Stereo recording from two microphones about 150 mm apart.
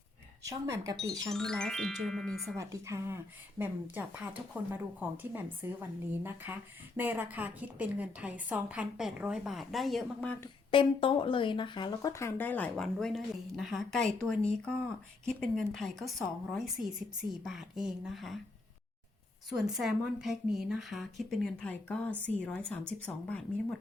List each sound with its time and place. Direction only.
0.4 s speech: 20° right (ahead or behind)
1.3 s speech: 5° left (ahead or behind)
2.6 s a woman's voice: 20° right (ahead or behind); by 10.5 s 10° left (ahead or behind)
10.7 s speech: 35° left (ahead or behind); by 18.3 s centre (ahead or behind)
19.5 s speech: 5° right (ahead or behind)